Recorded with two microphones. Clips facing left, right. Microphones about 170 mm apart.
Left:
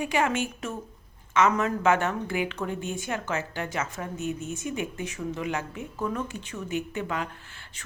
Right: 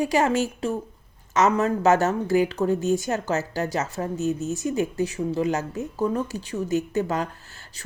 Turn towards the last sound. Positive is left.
turn(degrees=-40)  # may be behind; listen again after turning